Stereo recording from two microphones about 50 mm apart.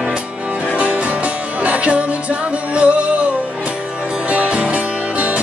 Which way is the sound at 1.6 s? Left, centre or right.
Right.